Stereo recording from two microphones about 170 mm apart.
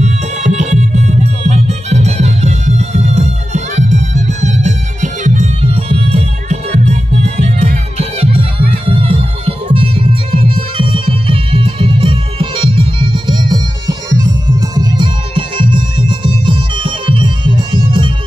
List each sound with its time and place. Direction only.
0.0 s music: 45° right (ahead or behind); by 18.1 s 25° right (ahead or behind)